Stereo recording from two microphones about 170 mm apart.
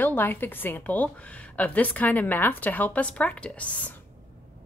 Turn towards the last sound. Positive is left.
turn(degrees=10)  # may be behind; listen again after turning